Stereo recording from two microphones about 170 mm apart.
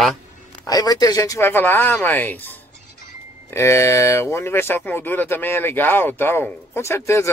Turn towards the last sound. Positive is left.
turn(degrees=15)  # may be behind; listen again after turning